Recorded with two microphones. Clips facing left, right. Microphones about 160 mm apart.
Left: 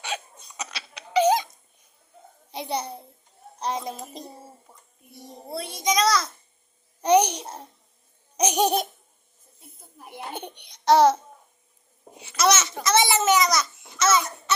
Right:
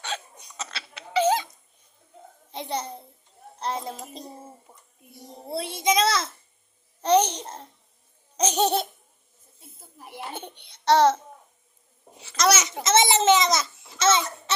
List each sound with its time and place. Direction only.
0.1 s hiccup: 15° left (ahead or behind)
0.5 s a sound: 15° left (ahead or behind)
2.5 s a child's voice: 10° left (ahead or behind)
5.5 s a child's voice: 25° right (ahead or behind)
7.0 s a child's voice: 10° left (ahead or behind)
9.6 s a sound: centre (ahead or behind)
10.3 s a child's voice: 15° left (ahead or behind)
12.6 s a child's voice: 20° right (ahead or behind)